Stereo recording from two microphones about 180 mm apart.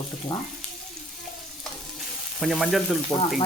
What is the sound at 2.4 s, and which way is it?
Frying, centre (ahead or behind).